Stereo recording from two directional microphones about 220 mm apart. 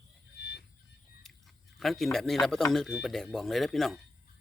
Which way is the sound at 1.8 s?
Centre (ahead or behind).